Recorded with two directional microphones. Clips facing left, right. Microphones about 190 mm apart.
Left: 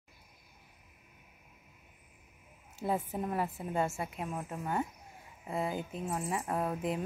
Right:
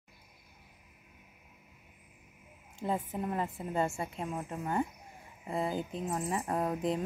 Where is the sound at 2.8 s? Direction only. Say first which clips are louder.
Even; 10° left (ahead or behind).